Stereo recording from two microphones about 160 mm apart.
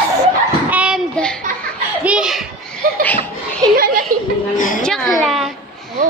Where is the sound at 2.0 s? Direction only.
5° right (ahead or behind).